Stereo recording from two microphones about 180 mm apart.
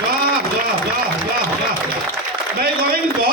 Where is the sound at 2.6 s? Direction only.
55° right (ahead or behind).